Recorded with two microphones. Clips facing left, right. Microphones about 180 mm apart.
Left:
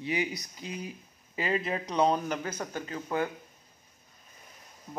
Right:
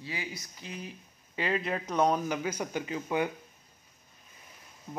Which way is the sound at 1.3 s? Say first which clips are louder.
Left 1 dB; 5° left (ahead or behind).